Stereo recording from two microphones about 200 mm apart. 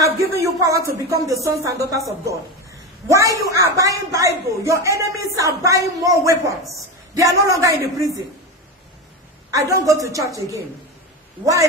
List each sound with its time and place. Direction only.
0.0 s a sound: 15° right (ahead or behind)
0.9 s a woman's voice: 15° right (ahead or behind)
3.1 s a woman's voice: 15° right (ahead or behind)
9.5 s a woman's voice: 15° right (ahead or behind)